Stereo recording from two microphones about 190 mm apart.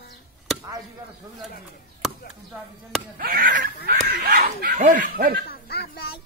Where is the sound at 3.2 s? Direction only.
50° right (ahead or behind).